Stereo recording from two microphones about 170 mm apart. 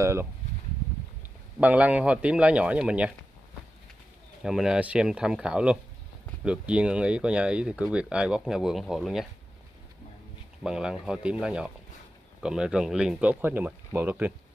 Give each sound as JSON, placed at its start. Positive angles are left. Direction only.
{"t": 0.0, "sound": "speech", "side_deg": -15}
{"t": 1.6, "sound": "speech", "side_deg": -10}
{"t": 4.4, "sound": "speech", "side_deg": -5}
{"t": 10.6, "sound": "speech", "side_deg": -5}